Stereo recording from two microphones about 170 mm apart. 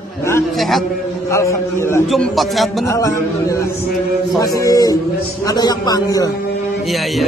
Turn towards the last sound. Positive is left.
turn(degrees=20)  # may be behind; listen again after turning